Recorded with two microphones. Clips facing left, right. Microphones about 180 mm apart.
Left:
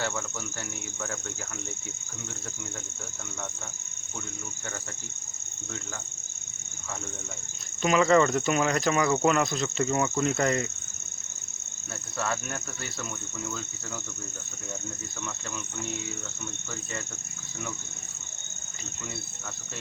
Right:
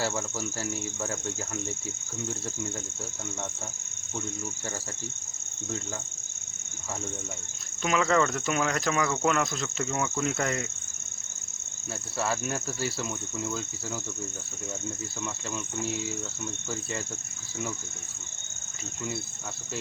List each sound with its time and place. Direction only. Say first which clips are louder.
0.0 s speech: right 2 dB; 35° right (ahead or behind)
7.8 s speech: left 4 dB; centre (ahead or behind)
12.1 s speech: right 2 dB; 30° right (ahead or behind)